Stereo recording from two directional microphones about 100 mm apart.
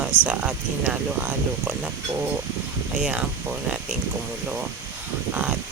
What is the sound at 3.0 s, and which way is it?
Speech, 10° right (ahead or behind).